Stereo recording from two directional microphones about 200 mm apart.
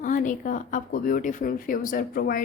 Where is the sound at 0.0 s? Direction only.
40° left (ahead or behind).